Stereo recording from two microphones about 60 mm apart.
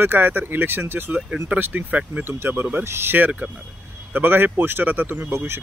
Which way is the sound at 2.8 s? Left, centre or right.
Right.